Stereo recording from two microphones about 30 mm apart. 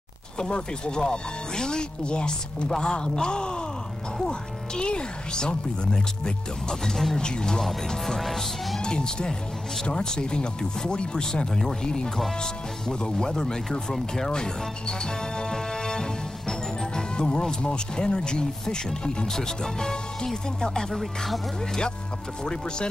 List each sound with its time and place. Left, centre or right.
0.4 s speech: left; by 7.2 s centre
7.2 s speech: left
8.7 s speech: left
13.3 s speech: centre
14.3 s music: left
17.4 s speech: left
22.4 s speech: left